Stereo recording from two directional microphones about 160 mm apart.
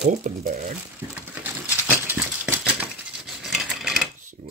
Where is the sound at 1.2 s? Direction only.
10° right (ahead or behind).